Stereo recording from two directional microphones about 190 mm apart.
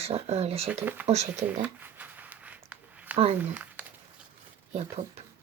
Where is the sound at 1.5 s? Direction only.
10° right (ahead or behind).